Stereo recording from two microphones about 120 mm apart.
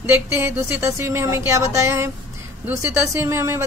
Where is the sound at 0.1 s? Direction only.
20° right (ahead or behind).